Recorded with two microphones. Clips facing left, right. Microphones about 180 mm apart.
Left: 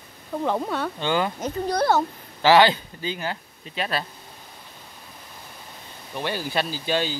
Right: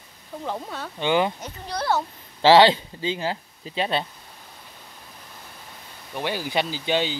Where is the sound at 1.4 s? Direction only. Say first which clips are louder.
Left 8 dB; 45° left (ahead or behind).